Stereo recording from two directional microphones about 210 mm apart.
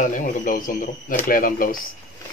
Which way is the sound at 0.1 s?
40° left (ahead or behind).